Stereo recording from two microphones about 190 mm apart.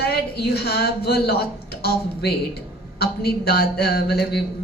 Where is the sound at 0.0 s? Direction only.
55° left (ahead or behind).